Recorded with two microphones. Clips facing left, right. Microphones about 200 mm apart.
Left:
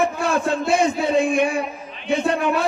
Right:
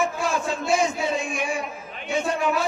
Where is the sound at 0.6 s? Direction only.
60° left (ahead or behind).